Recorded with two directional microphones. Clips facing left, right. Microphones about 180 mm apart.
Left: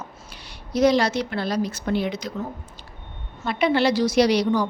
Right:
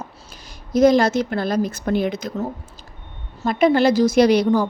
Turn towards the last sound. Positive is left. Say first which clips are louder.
# right 4 dB
turn(degrees=-50)  # may be behind; listen again after turning